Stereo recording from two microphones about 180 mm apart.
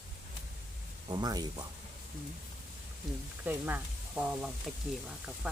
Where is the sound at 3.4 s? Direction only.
10° right (ahead or behind).